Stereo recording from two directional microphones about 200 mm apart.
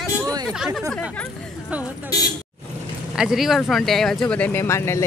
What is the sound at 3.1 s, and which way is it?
Speech, 5° right (ahead or behind).